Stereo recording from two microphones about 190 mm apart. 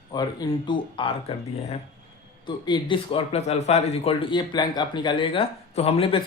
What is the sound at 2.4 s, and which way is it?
Speech, 25° left (ahead or behind).